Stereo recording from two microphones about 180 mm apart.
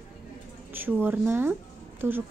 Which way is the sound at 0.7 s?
10° right (ahead or behind).